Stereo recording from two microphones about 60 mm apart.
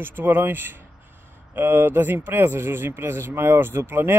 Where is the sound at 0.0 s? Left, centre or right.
Right.